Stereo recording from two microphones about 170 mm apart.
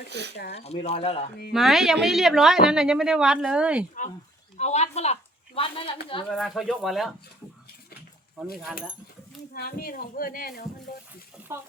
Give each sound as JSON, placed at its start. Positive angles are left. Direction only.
{"t": 0.1, "sound": "speech", "side_deg": -90}
{"t": 0.5, "sound": "speech", "side_deg": 40}
{"t": 1.5, "sound": "speech", "side_deg": 0}
{"t": 4.5, "sound": "speech", "side_deg": 40}
{"t": 6.2, "sound": "speech", "side_deg": 0}
{"t": 9.6, "sound": "speech", "side_deg": 65}